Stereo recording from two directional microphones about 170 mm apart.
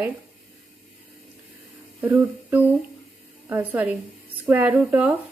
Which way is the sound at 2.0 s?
10° right (ahead or behind).